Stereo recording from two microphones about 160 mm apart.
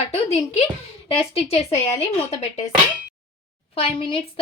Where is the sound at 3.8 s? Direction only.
35° left (ahead or behind).